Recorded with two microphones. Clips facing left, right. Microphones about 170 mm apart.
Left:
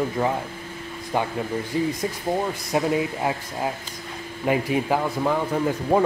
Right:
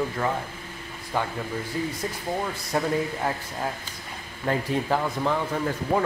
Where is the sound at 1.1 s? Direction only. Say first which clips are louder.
Left 3 dB; 20° left (ahead or behind).